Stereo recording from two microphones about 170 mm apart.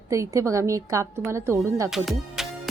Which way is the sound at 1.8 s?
Centre (ahead or behind).